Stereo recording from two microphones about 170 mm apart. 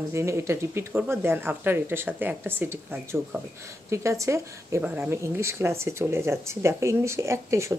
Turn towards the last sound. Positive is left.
turn(degrees=-15)  # may be behind; listen again after turning